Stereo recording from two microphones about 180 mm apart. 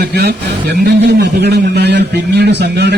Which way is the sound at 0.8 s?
65° right (ahead or behind).